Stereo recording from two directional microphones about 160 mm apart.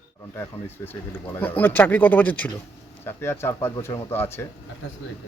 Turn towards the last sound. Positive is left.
turn(degrees=15)  # may be behind; listen again after turning